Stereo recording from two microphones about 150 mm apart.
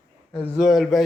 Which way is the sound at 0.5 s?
Centre (ahead or behind).